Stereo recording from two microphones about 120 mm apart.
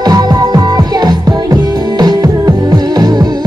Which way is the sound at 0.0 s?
35° right (ahead or behind).